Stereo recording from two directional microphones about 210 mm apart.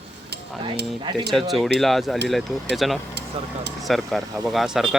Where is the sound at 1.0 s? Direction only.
20° right (ahead or behind).